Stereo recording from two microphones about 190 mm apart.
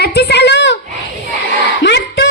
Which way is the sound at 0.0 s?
60° left (ahead or behind).